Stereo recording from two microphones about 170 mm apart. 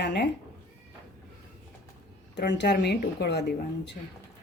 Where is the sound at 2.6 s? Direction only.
75° left (ahead or behind).